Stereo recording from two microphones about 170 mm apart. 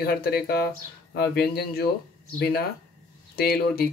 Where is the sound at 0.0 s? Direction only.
65° left (ahead or behind).